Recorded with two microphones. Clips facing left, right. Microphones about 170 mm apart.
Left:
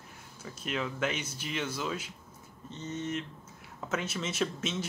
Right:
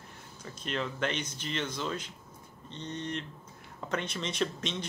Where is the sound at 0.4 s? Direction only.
5° left (ahead or behind).